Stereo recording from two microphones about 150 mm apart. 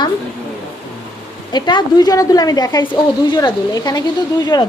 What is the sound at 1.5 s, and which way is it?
A woman's voice, 30° left (ahead or behind).